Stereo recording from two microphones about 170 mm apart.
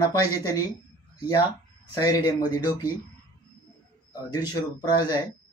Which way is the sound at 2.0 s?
25° left (ahead or behind).